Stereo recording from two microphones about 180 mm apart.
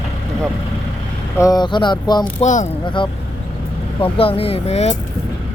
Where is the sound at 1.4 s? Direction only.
20° left (ahead or behind).